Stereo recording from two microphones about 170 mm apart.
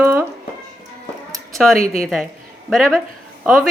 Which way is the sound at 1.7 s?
55° right (ahead or behind).